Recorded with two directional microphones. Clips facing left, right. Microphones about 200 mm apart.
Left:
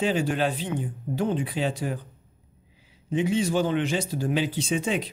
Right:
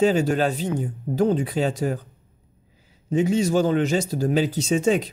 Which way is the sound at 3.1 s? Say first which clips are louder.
Right 4 dB; 40° right (ahead or behind).